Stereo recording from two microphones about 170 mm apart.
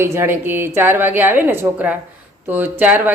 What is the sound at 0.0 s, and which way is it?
A woman's voice, 15° right (ahead or behind).